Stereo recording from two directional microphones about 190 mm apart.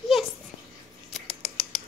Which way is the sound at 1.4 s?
Centre (ahead or behind).